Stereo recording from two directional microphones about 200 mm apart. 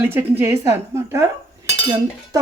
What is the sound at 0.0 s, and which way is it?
A woman's voice, 10° right (ahead or behind).